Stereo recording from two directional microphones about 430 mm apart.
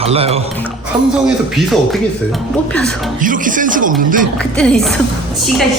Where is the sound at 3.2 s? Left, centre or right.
Centre.